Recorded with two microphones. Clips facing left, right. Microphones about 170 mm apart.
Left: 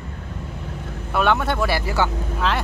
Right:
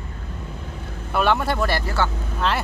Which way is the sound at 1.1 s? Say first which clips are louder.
Even; centre (ahead or behind).